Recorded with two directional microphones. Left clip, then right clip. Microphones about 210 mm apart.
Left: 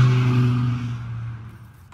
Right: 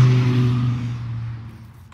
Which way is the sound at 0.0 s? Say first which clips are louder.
Right 1 dB; 45° right (ahead or behind).